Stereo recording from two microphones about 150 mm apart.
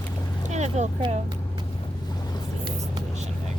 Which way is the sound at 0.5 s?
50° right (ahead or behind).